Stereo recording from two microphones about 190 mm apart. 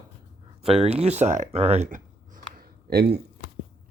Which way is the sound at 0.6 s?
30° right (ahead or behind).